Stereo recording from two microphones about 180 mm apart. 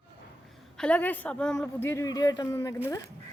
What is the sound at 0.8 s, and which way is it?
A man's voice, 10° left (ahead or behind).